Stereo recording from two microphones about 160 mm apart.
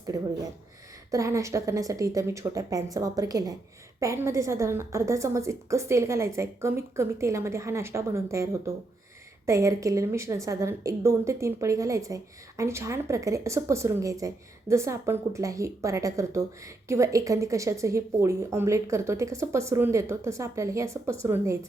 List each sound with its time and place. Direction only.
0.1 s a woman's voice: 20° right (ahead or behind)